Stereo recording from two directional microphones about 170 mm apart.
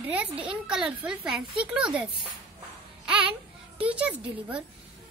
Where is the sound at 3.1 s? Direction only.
5° right (ahead or behind).